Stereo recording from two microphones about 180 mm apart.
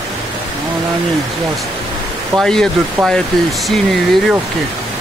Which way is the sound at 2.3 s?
Centre (ahead or behind).